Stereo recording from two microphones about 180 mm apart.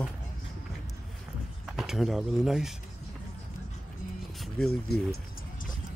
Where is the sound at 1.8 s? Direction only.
Centre (ahead or behind).